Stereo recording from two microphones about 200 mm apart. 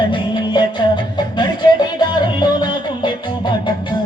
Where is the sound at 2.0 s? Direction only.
20° left (ahead or behind).